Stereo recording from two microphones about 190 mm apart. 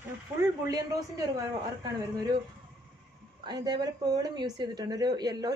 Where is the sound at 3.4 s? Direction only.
20° right (ahead or behind).